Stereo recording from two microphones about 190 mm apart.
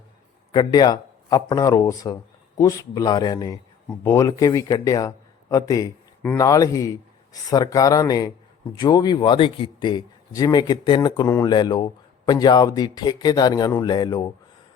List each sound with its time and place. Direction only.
0.5 s a man's voice: 20° left (ahead or behind)